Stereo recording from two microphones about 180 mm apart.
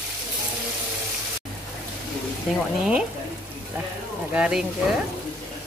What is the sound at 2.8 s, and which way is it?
Speech, 5° right (ahead or behind).